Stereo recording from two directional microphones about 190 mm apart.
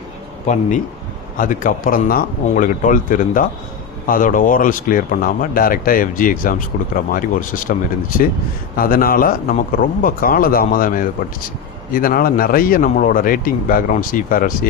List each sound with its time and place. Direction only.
1.4 s speech: 45° left (ahead or behind)